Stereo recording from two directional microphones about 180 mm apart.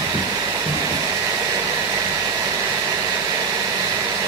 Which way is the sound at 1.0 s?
15° right (ahead or behind).